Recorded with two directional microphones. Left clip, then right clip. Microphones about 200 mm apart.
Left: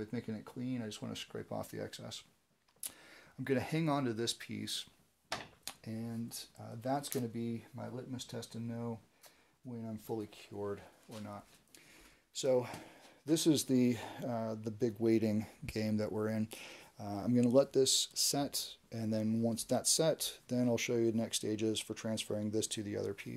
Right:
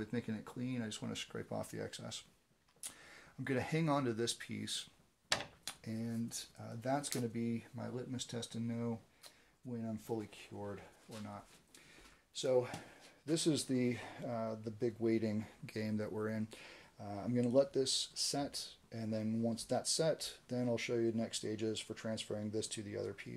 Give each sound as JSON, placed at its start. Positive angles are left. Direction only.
{"t": 0.0, "sound": "speech", "side_deg": 20}
{"t": 7.7, "sound": "speech", "side_deg": 20}
{"t": 12.4, "sound": "speech", "side_deg": 55}